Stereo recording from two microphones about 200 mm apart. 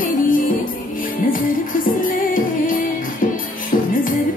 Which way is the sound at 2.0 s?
45° left (ahead or behind).